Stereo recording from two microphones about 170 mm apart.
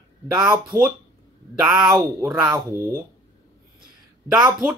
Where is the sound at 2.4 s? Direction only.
15° right (ahead or behind).